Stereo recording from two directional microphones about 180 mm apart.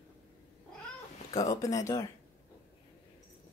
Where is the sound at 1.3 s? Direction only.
20° left (ahead or behind).